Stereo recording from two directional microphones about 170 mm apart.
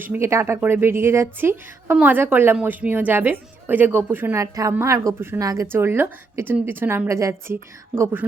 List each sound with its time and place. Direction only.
0.0 s a woman's voice: 15° right (ahead or behind)